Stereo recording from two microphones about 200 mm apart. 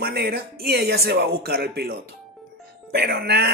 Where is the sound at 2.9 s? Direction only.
55° right (ahead or behind).